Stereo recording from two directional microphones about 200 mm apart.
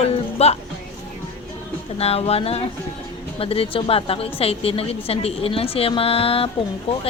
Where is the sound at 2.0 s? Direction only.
30° left (ahead or behind).